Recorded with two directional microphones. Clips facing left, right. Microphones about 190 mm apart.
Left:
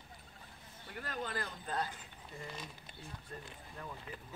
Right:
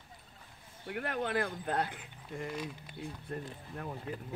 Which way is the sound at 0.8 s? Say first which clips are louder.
Right 7 dB; 65° right (ahead or behind).